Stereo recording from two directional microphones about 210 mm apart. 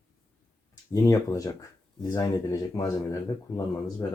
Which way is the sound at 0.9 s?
15° left (ahead or behind).